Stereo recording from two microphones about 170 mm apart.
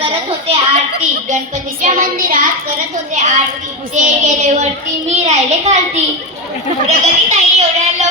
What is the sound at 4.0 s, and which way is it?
Child singing, 45° right (ahead or behind).